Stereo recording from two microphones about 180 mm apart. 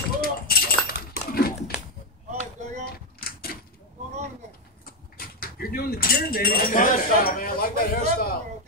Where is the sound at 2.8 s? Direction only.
55° left (ahead or behind).